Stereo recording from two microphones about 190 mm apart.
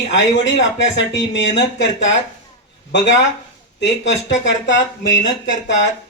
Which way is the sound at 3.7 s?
70° left (ahead or behind).